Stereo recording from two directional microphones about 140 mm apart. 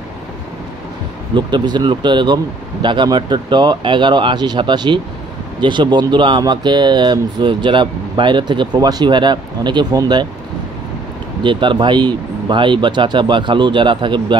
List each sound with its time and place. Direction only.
1.3 s speech: 30° right (ahead or behind)
11.4 s speech: 35° right (ahead or behind)